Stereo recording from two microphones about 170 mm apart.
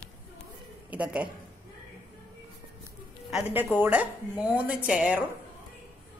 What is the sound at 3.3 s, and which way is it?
A woman's voice, 10° right (ahead or behind).